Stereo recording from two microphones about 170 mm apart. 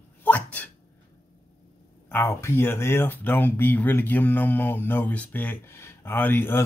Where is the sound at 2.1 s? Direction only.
15° left (ahead or behind).